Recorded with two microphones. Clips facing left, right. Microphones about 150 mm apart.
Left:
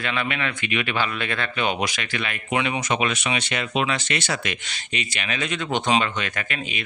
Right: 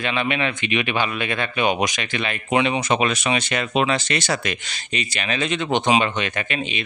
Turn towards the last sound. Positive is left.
turn(degrees=-25)  # may be behind; listen again after turning